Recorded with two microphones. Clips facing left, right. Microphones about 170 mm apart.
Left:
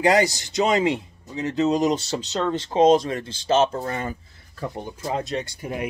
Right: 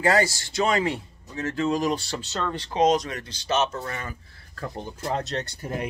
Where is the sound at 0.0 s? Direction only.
20° left (ahead or behind).